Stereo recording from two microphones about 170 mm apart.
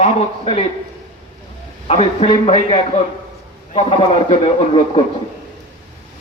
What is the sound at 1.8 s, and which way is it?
A man's voice, 35° left (ahead or behind).